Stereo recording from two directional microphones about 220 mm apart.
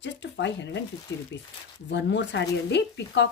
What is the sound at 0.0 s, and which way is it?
Speech, 55° left (ahead or behind).